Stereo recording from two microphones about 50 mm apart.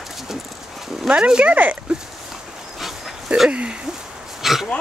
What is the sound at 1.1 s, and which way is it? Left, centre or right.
Speech, centre.